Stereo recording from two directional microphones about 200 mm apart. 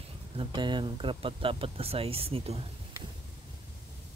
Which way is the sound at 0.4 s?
25° right (ahead or behind).